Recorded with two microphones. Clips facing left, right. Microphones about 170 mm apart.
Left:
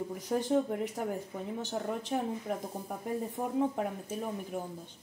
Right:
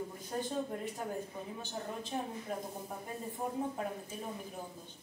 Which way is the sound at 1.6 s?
80° left.